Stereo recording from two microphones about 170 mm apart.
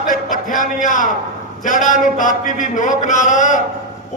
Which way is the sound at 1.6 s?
50° left (ahead or behind).